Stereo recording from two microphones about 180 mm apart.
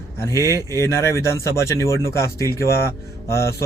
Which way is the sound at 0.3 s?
15° left (ahead or behind).